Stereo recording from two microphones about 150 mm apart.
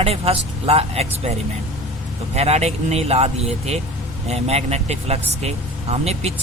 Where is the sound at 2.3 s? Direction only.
45° right (ahead or behind).